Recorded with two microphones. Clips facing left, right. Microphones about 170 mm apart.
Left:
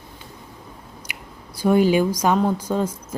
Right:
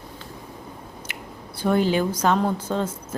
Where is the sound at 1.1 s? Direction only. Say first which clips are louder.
Right 2 dB; 10° left (ahead or behind).